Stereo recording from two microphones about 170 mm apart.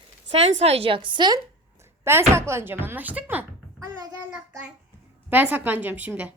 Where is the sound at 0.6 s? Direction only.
35° right (ahead or behind).